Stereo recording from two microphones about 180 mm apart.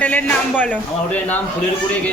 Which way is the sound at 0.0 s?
10° left (ahead or behind).